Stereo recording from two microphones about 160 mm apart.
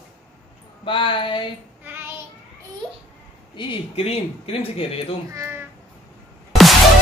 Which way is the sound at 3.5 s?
30° left (ahead or behind).